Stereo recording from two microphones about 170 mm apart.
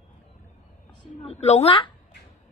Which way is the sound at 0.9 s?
40° left (ahead or behind).